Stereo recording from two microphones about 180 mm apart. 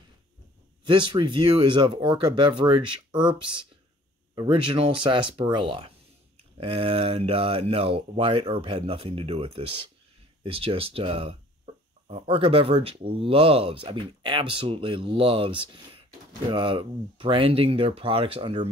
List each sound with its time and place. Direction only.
0.8 s speech: 25° right (ahead or behind)